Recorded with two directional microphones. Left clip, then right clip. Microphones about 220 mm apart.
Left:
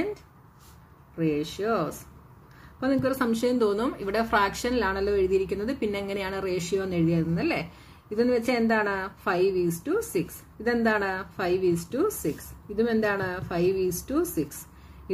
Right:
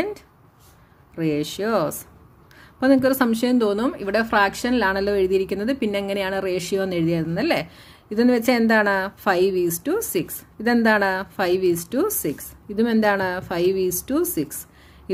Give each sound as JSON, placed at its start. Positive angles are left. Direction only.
{"t": 1.1, "sound": "speech", "side_deg": -45}